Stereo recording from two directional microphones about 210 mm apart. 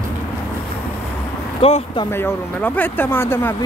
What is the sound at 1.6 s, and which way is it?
Speech, 30° left (ahead or behind).